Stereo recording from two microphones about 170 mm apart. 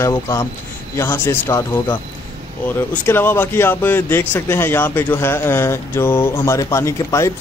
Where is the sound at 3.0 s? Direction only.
15° left (ahead or behind).